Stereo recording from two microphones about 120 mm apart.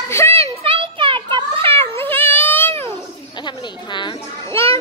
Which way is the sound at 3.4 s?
40° left (ahead or behind).